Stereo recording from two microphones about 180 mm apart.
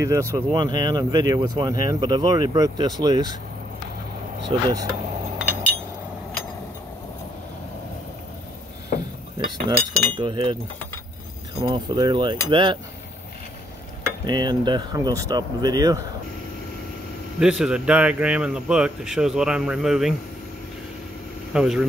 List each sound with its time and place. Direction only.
0.0 s speech: 15° right (ahead or behind)
4.5 s speech: 20° right (ahead or behind)
9.7 s speech: 25° right (ahead or behind)
11.6 s speech: 25° right (ahead or behind)
14.2 s speech: 25° right (ahead or behind)
17.4 s speech: 5° right (ahead or behind)
21.5 s speech: 5° right (ahead or behind)